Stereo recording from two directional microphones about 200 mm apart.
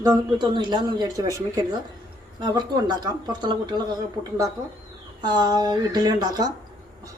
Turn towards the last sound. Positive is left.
turn(degrees=-20)  # may be behind; listen again after turning